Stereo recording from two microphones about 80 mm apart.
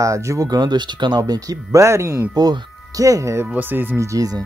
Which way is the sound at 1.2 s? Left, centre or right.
Right.